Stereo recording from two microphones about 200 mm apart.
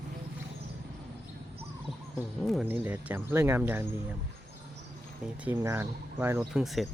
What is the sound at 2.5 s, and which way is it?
Speech, 5° right (ahead or behind).